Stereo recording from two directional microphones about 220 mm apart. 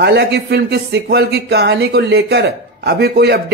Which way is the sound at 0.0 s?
50° right (ahead or behind).